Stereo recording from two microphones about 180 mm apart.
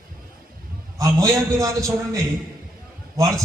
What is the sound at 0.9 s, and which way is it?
A man's voice, 15° right (ahead or behind).